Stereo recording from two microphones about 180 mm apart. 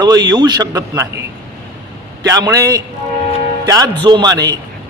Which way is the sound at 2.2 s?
20° right (ahead or behind).